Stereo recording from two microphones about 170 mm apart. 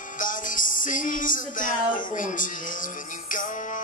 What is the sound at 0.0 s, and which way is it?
Music, 50° left (ahead or behind).